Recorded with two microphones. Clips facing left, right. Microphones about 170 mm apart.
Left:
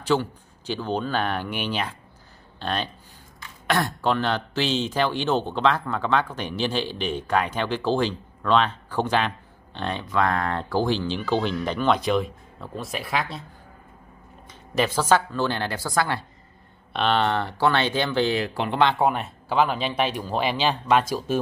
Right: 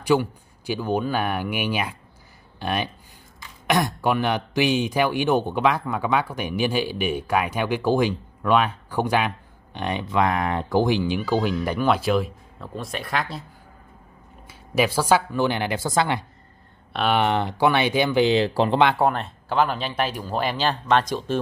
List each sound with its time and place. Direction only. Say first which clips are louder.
0.0 s speech: right 3 dB; 10° right (ahead or behind)
14.5 s speech: right 2 dB; 10° right (ahead or behind)
16.9 s speech: right 1 dB; 10° right (ahead or behind)
18.4 s speech: right 6 dB; 35° right (ahead or behind)
18.9 s speech: right 1 dB; 5° left (ahead or behind)
20.3 s speech: even; 10° left (ahead or behind)